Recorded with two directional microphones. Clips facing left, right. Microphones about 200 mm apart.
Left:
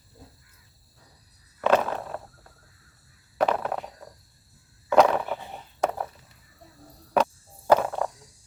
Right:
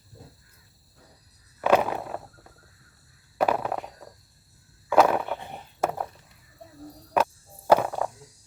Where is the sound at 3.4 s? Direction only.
5° right (ahead or behind).